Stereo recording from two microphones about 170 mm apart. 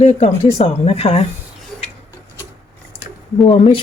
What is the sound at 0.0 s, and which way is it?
Speech, 40° left (ahead or behind).